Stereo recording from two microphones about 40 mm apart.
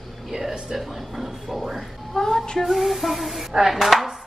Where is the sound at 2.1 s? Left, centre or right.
Centre.